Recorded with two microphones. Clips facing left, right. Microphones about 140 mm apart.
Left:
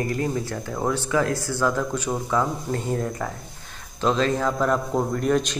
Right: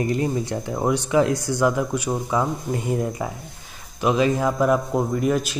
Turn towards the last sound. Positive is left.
turn(degrees=-5)  # may be behind; listen again after turning